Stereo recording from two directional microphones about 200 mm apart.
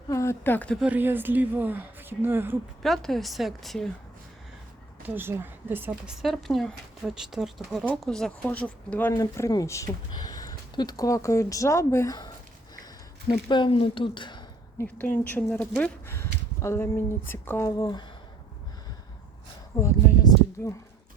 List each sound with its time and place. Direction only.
0.1 s a woman's voice: 15° left (ahead or behind)
0.9 s a woman's voice: 10° right (ahead or behind)
2.8 s speech: centre (ahead or behind)
5.0 s speech: 10° right (ahead or behind); by 12.3 s 20° left (ahead or behind)
12.7 s a sound: 20° left (ahead or behind)
14.9 s speech: 10° left (ahead or behind)
19.8 s a sound: 15° left (ahead or behind)